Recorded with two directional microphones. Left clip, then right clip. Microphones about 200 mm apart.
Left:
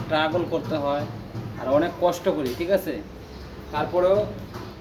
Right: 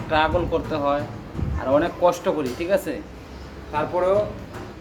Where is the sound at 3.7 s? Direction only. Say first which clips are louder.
Right 2 dB; 5° left (ahead or behind).